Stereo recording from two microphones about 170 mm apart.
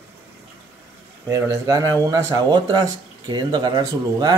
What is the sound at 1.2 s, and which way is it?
Speech, 20° right (ahead or behind).